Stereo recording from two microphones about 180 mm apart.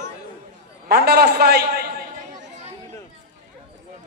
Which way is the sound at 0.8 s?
60° right (ahead or behind).